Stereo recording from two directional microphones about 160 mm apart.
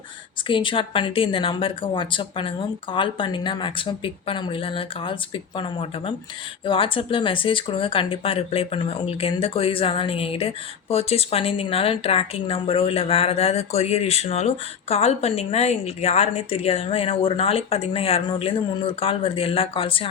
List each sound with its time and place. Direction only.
0.4 s speech: 30° left (ahead or behind)